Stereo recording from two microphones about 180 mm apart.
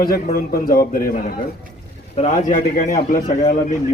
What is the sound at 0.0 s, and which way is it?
Speech, 55° left (ahead or behind).